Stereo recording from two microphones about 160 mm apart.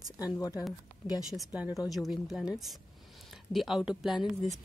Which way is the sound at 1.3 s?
5° right (ahead or behind).